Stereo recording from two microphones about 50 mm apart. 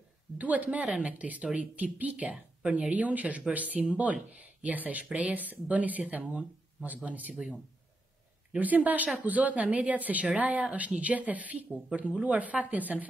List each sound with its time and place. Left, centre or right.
0.4 s speech: right
8.5 s speech: right